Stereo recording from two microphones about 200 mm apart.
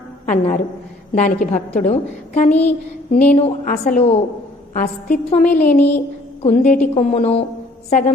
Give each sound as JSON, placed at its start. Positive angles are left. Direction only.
{"t": 0.3, "sound": "a woman's voice", "side_deg": 35}
{"t": 5.5, "sound": "speech", "side_deg": 10}
{"t": 6.4, "sound": "a woman's voice", "side_deg": 35}